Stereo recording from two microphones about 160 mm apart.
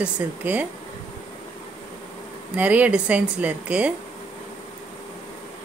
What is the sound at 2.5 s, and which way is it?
A woman's voice, 10° right (ahead or behind).